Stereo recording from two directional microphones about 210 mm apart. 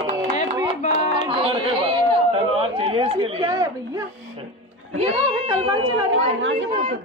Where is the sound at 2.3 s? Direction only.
25° right (ahead or behind).